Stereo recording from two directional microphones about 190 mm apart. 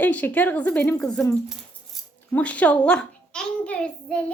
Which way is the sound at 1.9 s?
Centre (ahead or behind).